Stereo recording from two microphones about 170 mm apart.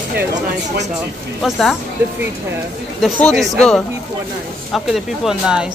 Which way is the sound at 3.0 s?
Centre (ahead or behind).